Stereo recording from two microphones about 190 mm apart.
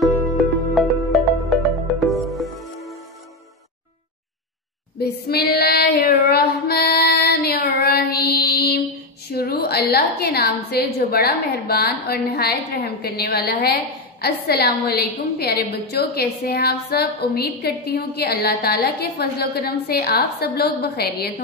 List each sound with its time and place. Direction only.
0.2 s music: centre (ahead or behind)
4.9 s child singing: 55° left (ahead or behind)
9.3 s a woman's voice: 55° left (ahead or behind)